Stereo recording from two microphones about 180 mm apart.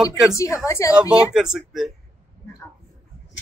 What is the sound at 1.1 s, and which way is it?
Speech, 5° right (ahead or behind).